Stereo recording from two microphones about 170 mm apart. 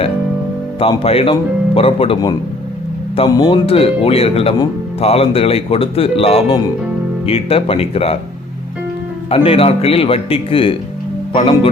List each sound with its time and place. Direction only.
0.8 s speech: 35° left (ahead or behind)
9.3 s speech: 35° left (ahead or behind)